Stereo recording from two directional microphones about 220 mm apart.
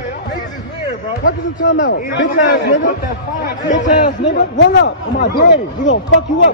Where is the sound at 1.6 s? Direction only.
55° left (ahead or behind).